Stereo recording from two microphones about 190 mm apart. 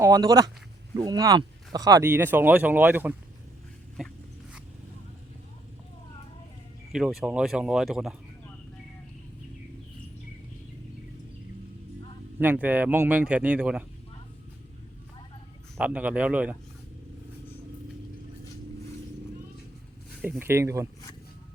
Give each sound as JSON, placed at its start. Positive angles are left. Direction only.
{"t": 0.0, "sound": "speech", "side_deg": -20}
{"t": 6.9, "sound": "speech", "side_deg": 0}
{"t": 12.4, "sound": "speech", "side_deg": -10}
{"t": 15.8, "sound": "speech", "side_deg": -5}
{"t": 20.2, "sound": "speech", "side_deg": -10}